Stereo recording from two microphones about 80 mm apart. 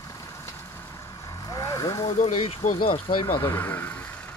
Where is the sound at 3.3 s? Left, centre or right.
Left.